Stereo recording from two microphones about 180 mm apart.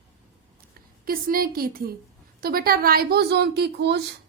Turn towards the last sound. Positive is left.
turn(degrees=-70)  # may be behind; listen again after turning